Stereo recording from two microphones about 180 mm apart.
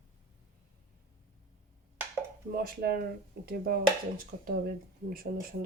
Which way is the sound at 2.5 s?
60° right (ahead or behind).